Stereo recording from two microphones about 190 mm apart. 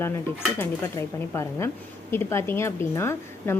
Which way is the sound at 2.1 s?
10° left (ahead or behind).